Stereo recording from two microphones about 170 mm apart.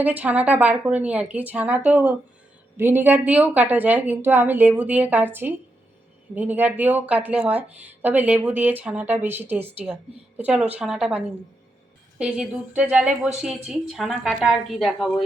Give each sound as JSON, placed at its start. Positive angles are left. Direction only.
{"t": 0.0, "sound": "speech", "side_deg": -10}
{"t": 12.2, "sound": "a woman's voice", "side_deg": -5}